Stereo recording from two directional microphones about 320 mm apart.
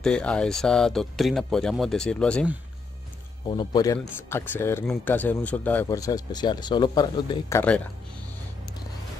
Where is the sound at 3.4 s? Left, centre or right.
Centre.